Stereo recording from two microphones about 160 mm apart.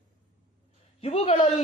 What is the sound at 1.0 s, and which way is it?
Speech, 40° left (ahead or behind).